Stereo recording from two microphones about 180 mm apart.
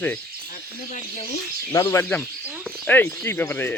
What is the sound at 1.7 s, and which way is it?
Speech, 15° left (ahead or behind).